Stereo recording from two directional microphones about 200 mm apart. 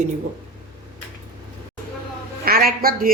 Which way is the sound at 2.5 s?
50° right (ahead or behind).